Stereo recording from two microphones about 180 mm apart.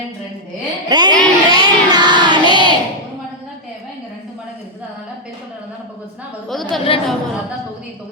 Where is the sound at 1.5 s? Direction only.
20° right (ahead or behind).